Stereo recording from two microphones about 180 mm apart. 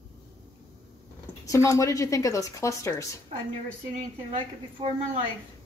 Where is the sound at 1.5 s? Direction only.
15° left (ahead or behind).